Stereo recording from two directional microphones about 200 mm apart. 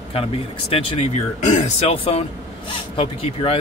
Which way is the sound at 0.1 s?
30° left (ahead or behind).